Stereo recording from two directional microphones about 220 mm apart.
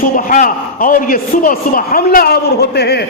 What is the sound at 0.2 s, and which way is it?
A man's voice, 40° left (ahead or behind).